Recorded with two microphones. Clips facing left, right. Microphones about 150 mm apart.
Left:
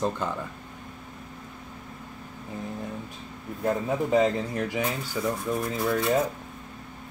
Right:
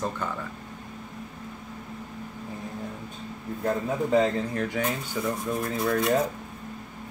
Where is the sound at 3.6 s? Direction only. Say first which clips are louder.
Left 1 dB; 15° left (ahead or behind).